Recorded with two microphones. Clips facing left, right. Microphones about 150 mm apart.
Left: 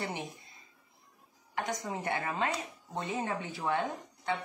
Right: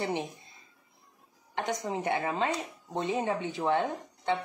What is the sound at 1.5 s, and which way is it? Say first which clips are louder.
Speech: right 3 dB; 20° right (ahead or behind).